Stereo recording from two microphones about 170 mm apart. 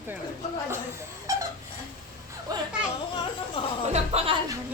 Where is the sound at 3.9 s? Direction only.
40° right (ahead or behind).